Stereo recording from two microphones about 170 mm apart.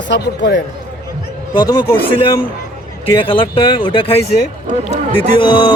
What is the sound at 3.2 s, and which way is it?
Speech, 30° left (ahead or behind).